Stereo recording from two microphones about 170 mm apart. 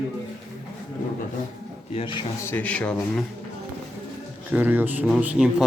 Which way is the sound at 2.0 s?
30° left (ahead or behind).